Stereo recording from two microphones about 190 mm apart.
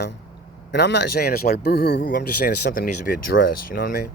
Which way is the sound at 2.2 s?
50° left (ahead or behind).